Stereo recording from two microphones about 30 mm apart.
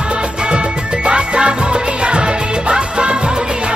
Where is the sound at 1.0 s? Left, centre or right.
Right.